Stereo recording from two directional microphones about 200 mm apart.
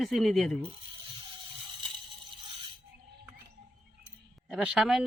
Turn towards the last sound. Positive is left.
turn(degrees=0)  # may be behind; listen again after turning